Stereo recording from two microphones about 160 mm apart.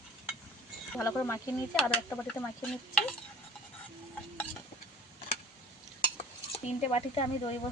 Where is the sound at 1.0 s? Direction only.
15° left (ahead or behind).